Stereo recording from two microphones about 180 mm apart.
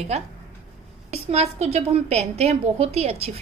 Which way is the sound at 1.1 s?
35° right (ahead or behind).